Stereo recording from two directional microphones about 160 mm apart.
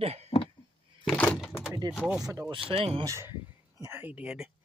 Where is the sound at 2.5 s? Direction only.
35° right (ahead or behind).